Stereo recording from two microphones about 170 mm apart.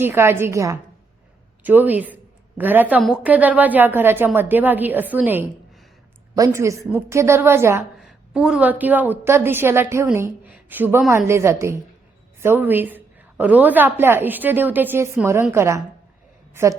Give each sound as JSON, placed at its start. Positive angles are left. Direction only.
{"t": 0.0, "sound": "a woman's voice", "side_deg": -15}
{"t": 7.9, "sound": "a woman's voice", "side_deg": -5}